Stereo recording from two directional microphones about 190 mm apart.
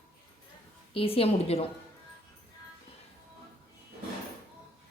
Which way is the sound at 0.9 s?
30° left (ahead or behind).